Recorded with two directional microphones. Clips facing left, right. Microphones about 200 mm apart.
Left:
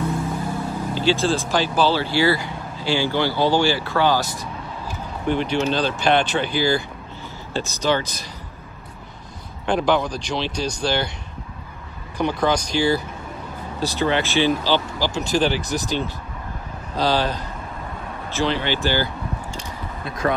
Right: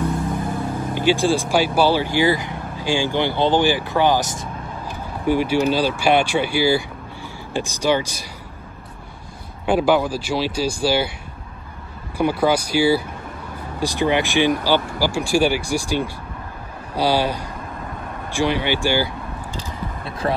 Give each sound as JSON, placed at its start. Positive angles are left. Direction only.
{"t": 0.9, "sound": "speech", "side_deg": -15}
{"t": 5.2, "sound": "speech", "side_deg": -10}
{"t": 9.7, "sound": "speech", "side_deg": -5}
{"t": 12.2, "sound": "speech", "side_deg": -10}
{"t": 20.1, "sound": "speech", "side_deg": -30}